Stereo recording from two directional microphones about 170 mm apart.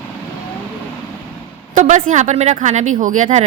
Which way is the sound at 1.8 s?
50° right (ahead or behind).